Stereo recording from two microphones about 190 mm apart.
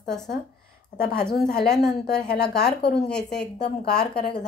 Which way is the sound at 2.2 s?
60° left (ahead or behind).